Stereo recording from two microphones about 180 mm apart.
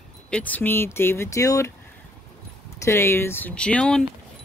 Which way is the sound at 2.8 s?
15° left (ahead or behind).